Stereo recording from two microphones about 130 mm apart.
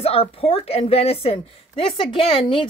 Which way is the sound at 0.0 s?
50° left (ahead or behind).